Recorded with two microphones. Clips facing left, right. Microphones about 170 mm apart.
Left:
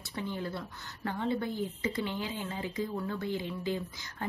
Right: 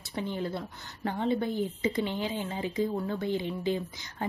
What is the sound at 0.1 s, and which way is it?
A woman's voice, 20° right (ahead or behind).